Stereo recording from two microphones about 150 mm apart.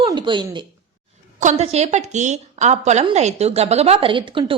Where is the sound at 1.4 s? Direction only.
50° right (ahead or behind).